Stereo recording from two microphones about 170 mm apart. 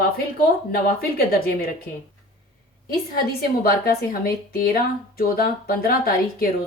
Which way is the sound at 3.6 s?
60° left (ahead or behind).